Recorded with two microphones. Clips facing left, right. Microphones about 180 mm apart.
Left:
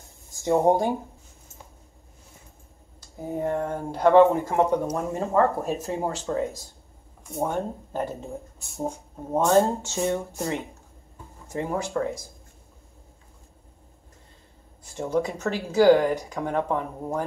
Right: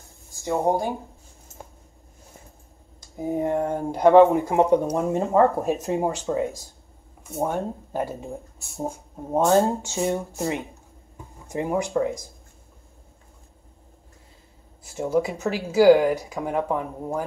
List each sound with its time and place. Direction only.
0.3 s speech: 20° left (ahead or behind)
3.2 s speech: 15° right (ahead or behind)
7.2 s speech: 5° right (ahead or behind)
14.8 s speech: 5° right (ahead or behind)